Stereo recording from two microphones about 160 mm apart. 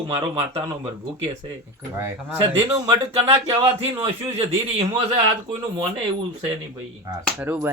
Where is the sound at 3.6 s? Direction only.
15° right (ahead or behind).